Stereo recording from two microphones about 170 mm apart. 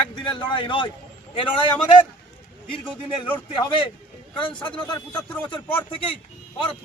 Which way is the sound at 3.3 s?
30° left (ahead or behind).